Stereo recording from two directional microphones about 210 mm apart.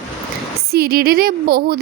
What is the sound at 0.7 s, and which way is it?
Speech, 50° right (ahead or behind).